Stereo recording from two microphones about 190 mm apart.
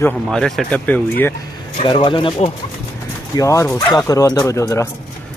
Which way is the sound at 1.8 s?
25° left (ahead or behind).